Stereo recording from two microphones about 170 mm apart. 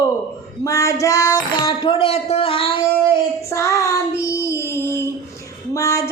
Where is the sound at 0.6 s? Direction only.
20° left (ahead or behind).